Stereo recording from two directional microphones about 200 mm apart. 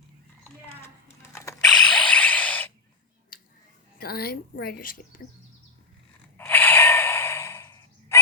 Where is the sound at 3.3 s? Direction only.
45° left (ahead or behind).